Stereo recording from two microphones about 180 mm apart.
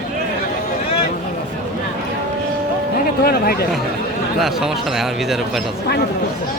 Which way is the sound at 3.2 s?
55° left (ahead or behind).